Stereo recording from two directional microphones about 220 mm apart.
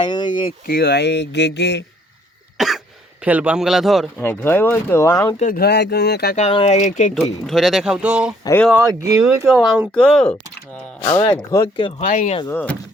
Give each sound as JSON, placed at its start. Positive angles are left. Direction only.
{"t": 0.0, "sound": "a sound", "side_deg": 20}
{"t": 0.7, "sound": "speech", "side_deg": 45}
{"t": 2.6, "sound": "a sound", "side_deg": 0}
{"t": 4.2, "sound": "speech", "side_deg": 10}
{"t": 5.4, "sound": "speech", "side_deg": 40}
{"t": 6.3, "sound": "speech", "side_deg": 25}
{"t": 7.1, "sound": "speech", "side_deg": 0}
{"t": 8.4, "sound": "speech", "side_deg": 10}
{"t": 8.7, "sound": "speech", "side_deg": -15}
{"t": 9.5, "sound": "speech", "side_deg": 0}
{"t": 11.0, "sound": "speech", "side_deg": 15}
{"t": 11.8, "sound": "speech", "side_deg": 30}
{"t": 12.5, "sound": "speech", "side_deg": 10}